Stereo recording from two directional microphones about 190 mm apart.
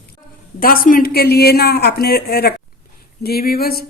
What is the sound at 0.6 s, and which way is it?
Speech, 50° left (ahead or behind).